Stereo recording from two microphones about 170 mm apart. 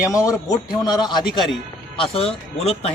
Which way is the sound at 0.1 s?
20° left (ahead or behind).